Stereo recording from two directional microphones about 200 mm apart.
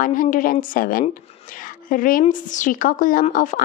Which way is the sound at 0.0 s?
40° left (ahead or behind).